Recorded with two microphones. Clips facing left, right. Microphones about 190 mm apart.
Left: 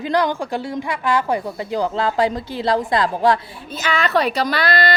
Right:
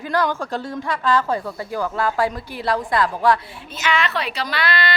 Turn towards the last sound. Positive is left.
turn(degrees=40)  # may be behind; listen again after turning